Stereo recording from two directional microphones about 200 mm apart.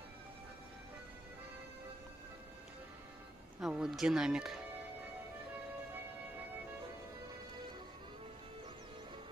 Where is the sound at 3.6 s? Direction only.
5° right (ahead or behind).